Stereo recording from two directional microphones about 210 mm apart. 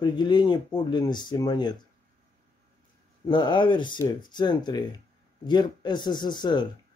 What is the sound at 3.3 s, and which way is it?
A man's voice, 20° left (ahead or behind).